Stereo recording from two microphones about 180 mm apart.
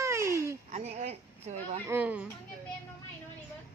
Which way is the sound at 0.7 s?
40° right (ahead or behind).